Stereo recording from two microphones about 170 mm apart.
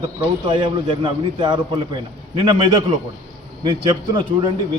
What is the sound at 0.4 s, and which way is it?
A man's voice, 30° right (ahead or behind).